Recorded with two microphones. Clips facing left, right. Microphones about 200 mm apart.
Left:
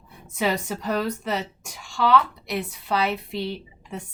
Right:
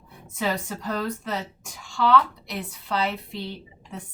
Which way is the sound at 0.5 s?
75° left (ahead or behind).